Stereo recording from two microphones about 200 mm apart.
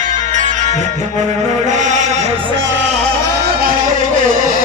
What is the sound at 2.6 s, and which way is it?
Music, 65° right (ahead or behind).